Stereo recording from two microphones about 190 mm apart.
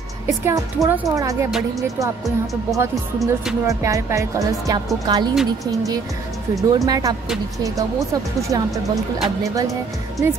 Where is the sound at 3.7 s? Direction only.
15° right (ahead or behind).